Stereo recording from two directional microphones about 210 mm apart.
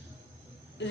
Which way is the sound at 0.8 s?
60° left (ahead or behind).